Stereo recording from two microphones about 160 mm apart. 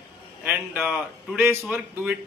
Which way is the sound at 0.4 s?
10° right (ahead or behind).